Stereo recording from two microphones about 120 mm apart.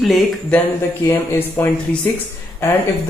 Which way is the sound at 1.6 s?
15° left (ahead or behind).